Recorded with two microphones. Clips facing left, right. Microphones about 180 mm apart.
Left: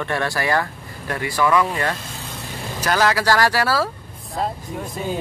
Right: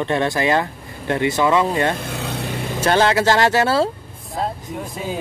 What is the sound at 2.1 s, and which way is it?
Vehicle, 70° right (ahead or behind).